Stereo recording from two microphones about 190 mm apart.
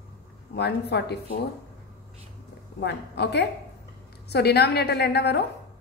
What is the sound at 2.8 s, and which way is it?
A woman's voice, 60° left (ahead or behind).